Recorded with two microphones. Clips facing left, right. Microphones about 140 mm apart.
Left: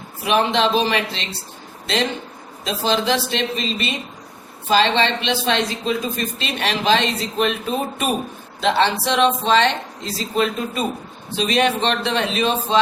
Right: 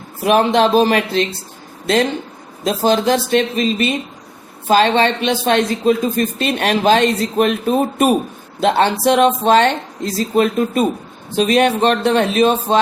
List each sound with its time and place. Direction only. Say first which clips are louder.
0.3 s speech: right 5 dB; 45° right (ahead or behind)
2.6 s speech: right 5 dB; 45° right (ahead or behind)